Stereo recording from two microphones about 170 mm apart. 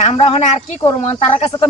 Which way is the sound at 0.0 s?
35° left (ahead or behind).